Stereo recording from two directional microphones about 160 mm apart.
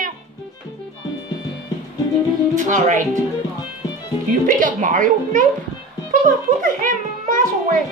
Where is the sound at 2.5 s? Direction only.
50° right (ahead or behind).